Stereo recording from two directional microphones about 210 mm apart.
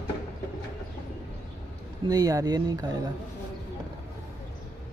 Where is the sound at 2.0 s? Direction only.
15° right (ahead or behind).